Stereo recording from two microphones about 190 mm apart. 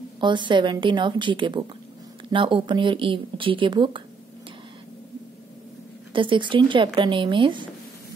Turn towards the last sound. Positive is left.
turn(degrees=-25)  # may be behind; listen again after turning